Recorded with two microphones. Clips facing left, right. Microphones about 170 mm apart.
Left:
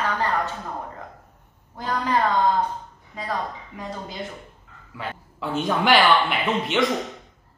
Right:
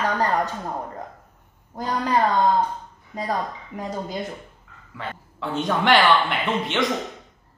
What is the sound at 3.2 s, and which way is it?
Speech, 40° right (ahead or behind).